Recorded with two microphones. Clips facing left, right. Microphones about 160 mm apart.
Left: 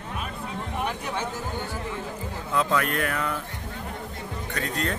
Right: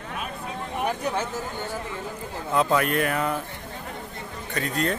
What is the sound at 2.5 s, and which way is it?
Speech, 20° right (ahead or behind).